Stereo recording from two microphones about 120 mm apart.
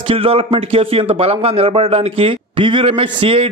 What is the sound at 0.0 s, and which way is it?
A man's voice, 50° right (ahead or behind).